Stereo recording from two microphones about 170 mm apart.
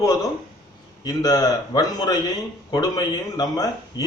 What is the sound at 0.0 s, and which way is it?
A man's voice, 20° left (ahead or behind).